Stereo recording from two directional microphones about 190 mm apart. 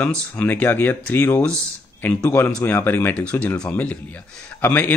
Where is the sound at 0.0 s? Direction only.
5° left (ahead or behind).